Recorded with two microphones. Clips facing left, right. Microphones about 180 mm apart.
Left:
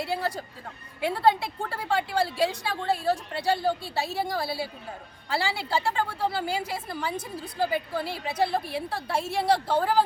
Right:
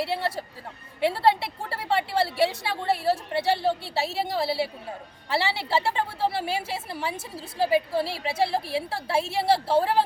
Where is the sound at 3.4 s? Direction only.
25° right (ahead or behind).